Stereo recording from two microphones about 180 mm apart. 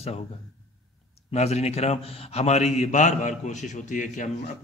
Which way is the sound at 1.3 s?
35° left (ahead or behind).